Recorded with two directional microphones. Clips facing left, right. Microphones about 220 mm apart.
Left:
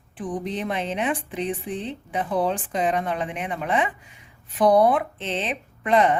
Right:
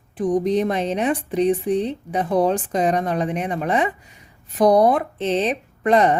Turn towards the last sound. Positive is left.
turn(degrees=-40)  # may be behind; listen again after turning